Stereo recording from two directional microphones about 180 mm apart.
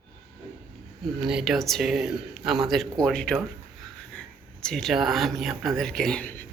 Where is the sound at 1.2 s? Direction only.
5° right (ahead or behind).